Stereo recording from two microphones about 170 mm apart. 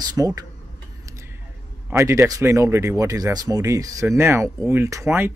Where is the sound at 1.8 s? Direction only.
15° right (ahead or behind).